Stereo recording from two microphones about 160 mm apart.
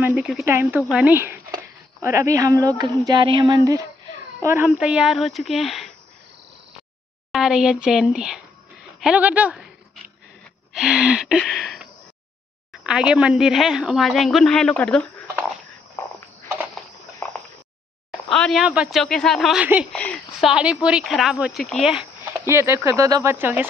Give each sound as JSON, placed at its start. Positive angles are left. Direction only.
{"t": 0.0, "sound": "speech", "side_deg": -10}
{"t": 4.6, "sound": "speech", "side_deg": -5}
{"t": 7.3, "sound": "speech", "side_deg": -5}
{"t": 10.7, "sound": "gasp", "side_deg": -5}
{"t": 12.7, "sound": "speech", "side_deg": -5}
{"t": 16.0, "sound": "a sound", "side_deg": 20}
{"t": 16.7, "sound": "a sound", "side_deg": 10}
{"t": 18.3, "sound": "speech", "side_deg": 0}
{"t": 19.9, "sound": "speech", "side_deg": 5}
{"t": 22.2, "sound": "speech", "side_deg": -15}